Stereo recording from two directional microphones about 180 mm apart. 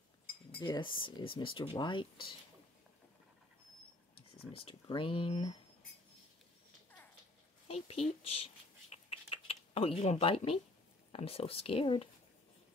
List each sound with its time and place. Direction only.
0.6 s speech: 25° left (ahead or behind)
4.5 s speech: 30° left (ahead or behind)
7.6 s speech: 35° left (ahead or behind)
8.9 s a sound: 30° left (ahead or behind)
11.1 s speech: 35° left (ahead or behind)